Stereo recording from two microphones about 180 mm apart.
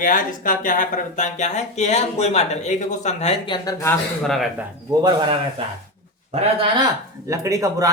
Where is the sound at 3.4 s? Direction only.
20° left (ahead or behind).